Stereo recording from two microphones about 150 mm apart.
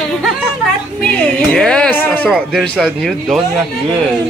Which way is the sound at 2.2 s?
Centre (ahead or behind).